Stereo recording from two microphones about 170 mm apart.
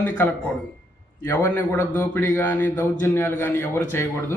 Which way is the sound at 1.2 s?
15° left (ahead or behind).